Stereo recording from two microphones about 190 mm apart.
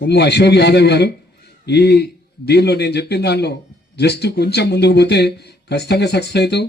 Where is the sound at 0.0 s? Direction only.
60° left (ahead or behind).